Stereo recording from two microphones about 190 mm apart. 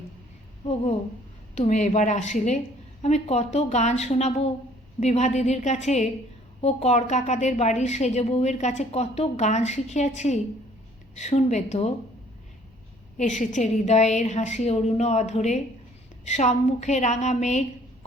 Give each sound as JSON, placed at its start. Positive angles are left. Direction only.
{"t": 1.5, "sound": "a woman's voice", "side_deg": 35}
{"t": 13.1, "sound": "a woman's voice", "side_deg": 40}